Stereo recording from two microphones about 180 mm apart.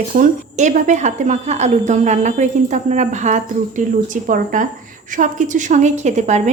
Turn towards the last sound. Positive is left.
turn(degrees=-40)  # may be behind; listen again after turning